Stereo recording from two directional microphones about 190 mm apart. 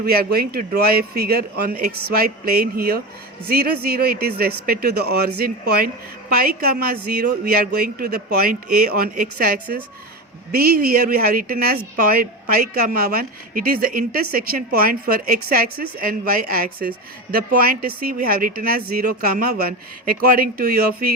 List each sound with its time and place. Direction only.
0.0 s speech: 55° right (ahead or behind)